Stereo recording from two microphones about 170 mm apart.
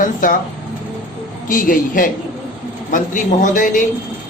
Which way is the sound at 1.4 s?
50° left (ahead or behind).